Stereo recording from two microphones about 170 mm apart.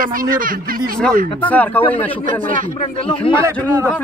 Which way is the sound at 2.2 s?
50° right (ahead or behind).